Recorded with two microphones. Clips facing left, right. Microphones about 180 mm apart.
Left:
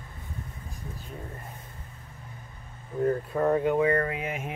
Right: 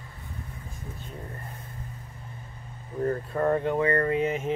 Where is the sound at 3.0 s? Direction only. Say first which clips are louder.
Left 1 dB; 5° left (ahead or behind).